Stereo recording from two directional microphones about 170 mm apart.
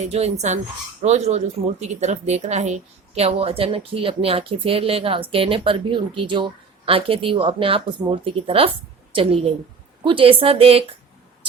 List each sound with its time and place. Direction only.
0.0 s a woman's voice: 40° right (ahead or behind)
10.0 s a woman's voice: 30° right (ahead or behind)